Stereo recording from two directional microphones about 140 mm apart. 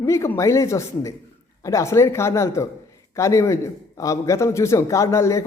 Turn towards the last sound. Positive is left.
turn(degrees=20)  # may be behind; listen again after turning